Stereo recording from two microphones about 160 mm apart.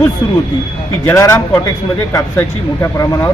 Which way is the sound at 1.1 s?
15° left (ahead or behind).